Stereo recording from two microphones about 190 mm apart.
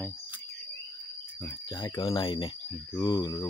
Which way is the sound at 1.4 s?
15° left (ahead or behind).